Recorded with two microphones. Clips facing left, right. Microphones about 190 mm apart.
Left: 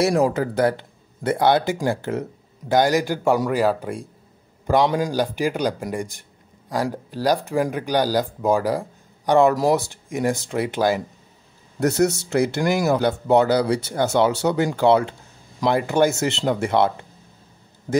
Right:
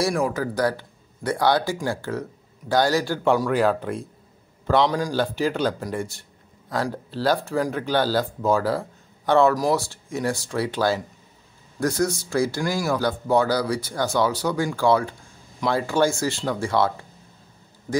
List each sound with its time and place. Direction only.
0.3 s speech: 25° left (ahead or behind)